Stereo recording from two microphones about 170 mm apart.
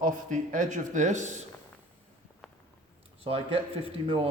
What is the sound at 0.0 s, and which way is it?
Speech, 50° right (ahead or behind).